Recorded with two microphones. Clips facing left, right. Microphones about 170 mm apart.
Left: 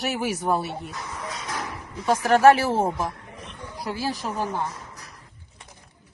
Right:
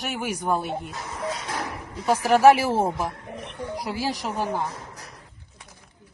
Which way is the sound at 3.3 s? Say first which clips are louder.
Right 6 dB; 65° right (ahead or behind).